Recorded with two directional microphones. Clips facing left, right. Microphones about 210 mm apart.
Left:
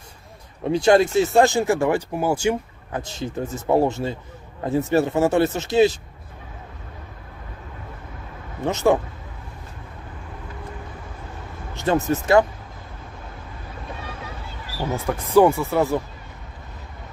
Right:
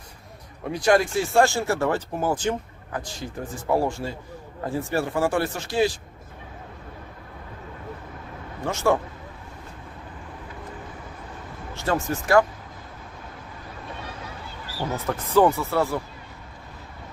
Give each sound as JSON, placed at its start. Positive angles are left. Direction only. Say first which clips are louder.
{"t": 0.7, "sound": "speech", "louder": "left 4 dB", "side_deg": 25}
{"t": 2.9, "sound": "a man's voice", "louder": "left 4 dB", "side_deg": 25}
{"t": 8.6, "sound": "a man's voice", "louder": "left 4 dB", "side_deg": 20}
{"t": 11.7, "sound": "speech", "louder": "left 5 dB", "side_deg": 20}
{"t": 15.3, "sound": "speech", "louder": "left 3 dB", "side_deg": 15}